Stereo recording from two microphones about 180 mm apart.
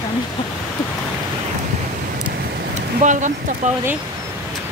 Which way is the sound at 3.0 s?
45° right (ahead or behind).